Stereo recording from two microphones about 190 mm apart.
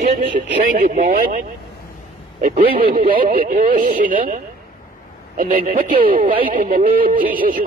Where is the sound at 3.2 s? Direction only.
50° right (ahead or behind).